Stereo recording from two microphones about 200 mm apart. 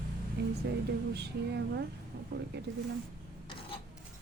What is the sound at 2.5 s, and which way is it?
Speech, 60° right (ahead or behind).